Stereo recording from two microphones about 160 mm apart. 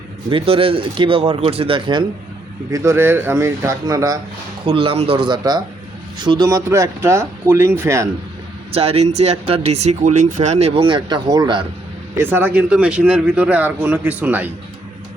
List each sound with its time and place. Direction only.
0.3 s speech: 35° right (ahead or behind)
2.7 s speech: 15° right (ahead or behind)
4.6 s speech: 35° right (ahead or behind); by 8.1 s 20° right (ahead or behind)
8.7 s speech: 40° right (ahead or behind)
12.1 s a man's voice: 15° right (ahead or behind)